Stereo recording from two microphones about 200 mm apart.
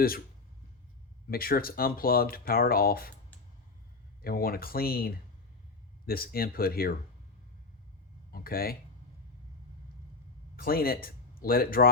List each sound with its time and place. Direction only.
1.3 s speech: 50° left (ahead or behind)
4.2 s speech: 45° left (ahead or behind)
8.3 s speech: 50° left (ahead or behind)
10.6 s speech: 50° left (ahead or behind)